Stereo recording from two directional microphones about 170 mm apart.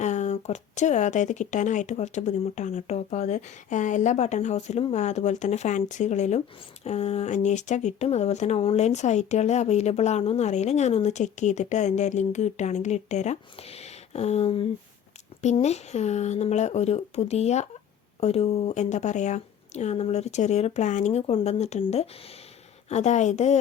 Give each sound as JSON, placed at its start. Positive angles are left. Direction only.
{"t": 0.0, "sound": "speech", "side_deg": 45}